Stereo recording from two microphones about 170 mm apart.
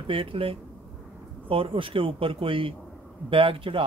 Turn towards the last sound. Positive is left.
turn(degrees=-30)  # may be behind; listen again after turning